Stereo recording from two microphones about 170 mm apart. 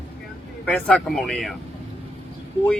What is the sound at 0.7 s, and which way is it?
Speech, 5° left (ahead or behind).